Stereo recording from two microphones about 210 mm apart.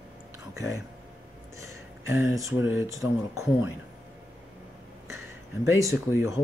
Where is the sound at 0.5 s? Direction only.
15° right (ahead or behind).